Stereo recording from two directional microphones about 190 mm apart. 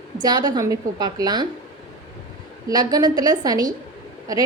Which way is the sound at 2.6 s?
20° right (ahead or behind).